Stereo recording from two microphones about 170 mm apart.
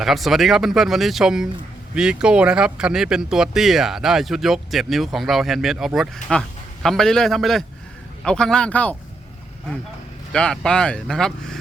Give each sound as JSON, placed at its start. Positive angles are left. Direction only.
{"t": 0.0, "sound": "speech", "side_deg": 0}
{"t": 10.3, "sound": "speech", "side_deg": 5}